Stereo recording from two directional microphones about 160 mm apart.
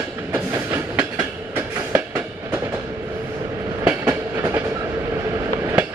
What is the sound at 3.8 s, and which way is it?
Train, 15° right (ahead or behind).